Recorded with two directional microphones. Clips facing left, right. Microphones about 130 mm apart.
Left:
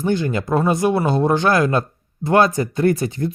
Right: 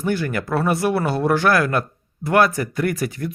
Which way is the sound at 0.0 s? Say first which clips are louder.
Left 2 dB; 20° left (ahead or behind).